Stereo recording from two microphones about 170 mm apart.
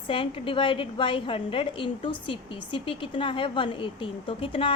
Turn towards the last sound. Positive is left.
turn(degrees=30)  # may be behind; listen again after turning